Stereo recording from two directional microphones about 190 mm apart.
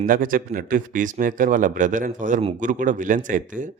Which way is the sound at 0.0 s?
45° right (ahead or behind).